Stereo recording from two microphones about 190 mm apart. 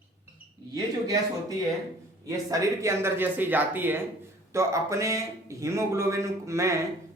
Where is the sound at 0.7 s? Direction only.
20° right (ahead or behind).